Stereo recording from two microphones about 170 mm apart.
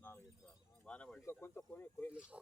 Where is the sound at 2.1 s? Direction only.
5° right (ahead or behind).